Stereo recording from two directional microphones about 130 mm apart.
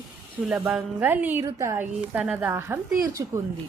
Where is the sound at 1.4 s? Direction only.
25° right (ahead or behind).